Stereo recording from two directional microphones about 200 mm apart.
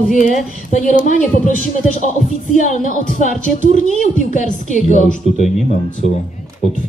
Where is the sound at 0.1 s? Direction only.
40° left (ahead or behind).